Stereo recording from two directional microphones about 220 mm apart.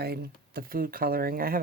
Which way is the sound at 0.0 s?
45° right (ahead or behind).